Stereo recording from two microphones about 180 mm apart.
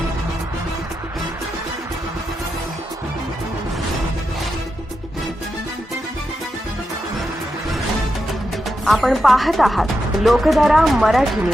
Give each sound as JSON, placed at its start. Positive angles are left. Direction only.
{"t": 8.8, "sound": "speech", "side_deg": 0}